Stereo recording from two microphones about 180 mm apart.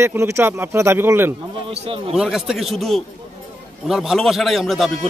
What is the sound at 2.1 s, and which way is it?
Speech, 5° right (ahead or behind).